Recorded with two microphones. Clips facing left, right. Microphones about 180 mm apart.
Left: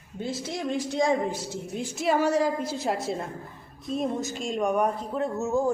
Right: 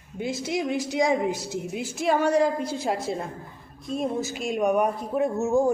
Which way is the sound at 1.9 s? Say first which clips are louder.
Right 2 dB; 5° left (ahead or behind).